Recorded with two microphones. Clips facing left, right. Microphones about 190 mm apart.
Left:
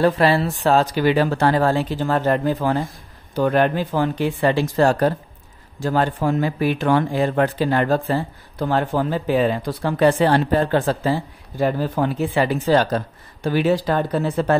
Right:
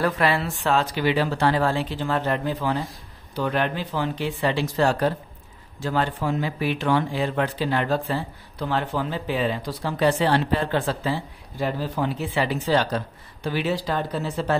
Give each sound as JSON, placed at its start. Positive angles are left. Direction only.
{"t": 0.0, "sound": "speech", "side_deg": 35}